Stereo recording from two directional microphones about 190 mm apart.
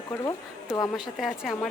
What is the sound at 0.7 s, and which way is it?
Speech, 20° left (ahead or behind).